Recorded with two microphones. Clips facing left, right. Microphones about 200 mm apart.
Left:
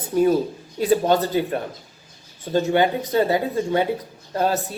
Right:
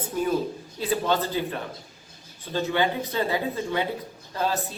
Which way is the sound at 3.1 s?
40° left (ahead or behind).